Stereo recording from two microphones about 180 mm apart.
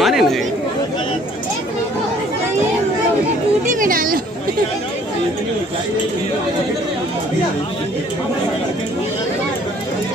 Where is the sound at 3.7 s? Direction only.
50° right (ahead or behind).